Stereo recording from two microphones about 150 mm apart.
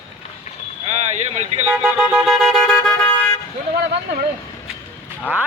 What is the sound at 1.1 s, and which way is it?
Speech, 50° right (ahead or behind).